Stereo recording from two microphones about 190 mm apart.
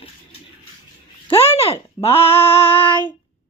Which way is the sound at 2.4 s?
30° left (ahead or behind).